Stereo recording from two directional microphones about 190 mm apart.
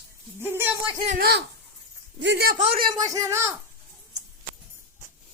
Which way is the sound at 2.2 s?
60° right (ahead or behind).